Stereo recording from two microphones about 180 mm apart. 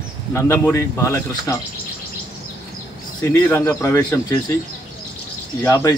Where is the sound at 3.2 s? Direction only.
10° left (ahead or behind).